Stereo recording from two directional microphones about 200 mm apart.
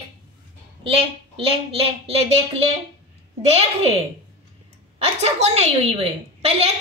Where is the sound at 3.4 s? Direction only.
30° right (ahead or behind).